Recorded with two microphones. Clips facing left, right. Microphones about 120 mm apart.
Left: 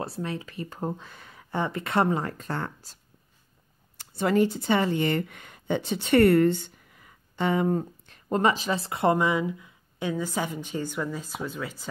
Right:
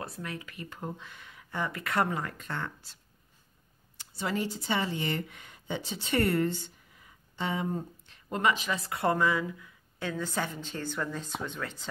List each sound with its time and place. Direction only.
0.0 s speech: 30° left (ahead or behind)
4.0 s speech: 55° left (ahead or behind)
8.1 s speech: 35° left (ahead or behind); by 11.9 s 10° left (ahead or behind)